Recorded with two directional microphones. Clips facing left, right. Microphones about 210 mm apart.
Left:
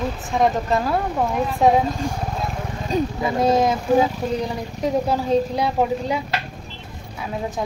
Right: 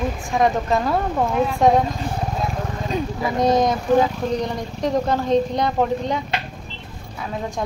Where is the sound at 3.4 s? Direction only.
5° left (ahead or behind).